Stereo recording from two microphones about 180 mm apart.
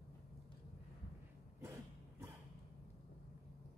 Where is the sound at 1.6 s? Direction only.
15° right (ahead or behind).